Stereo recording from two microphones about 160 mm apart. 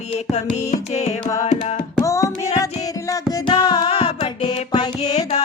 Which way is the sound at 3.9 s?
40° left (ahead or behind).